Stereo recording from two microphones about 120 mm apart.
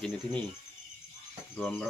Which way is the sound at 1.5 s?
10° left (ahead or behind).